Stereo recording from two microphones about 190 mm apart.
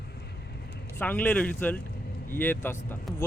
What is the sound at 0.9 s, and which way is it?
Speech, 10° left (ahead or behind).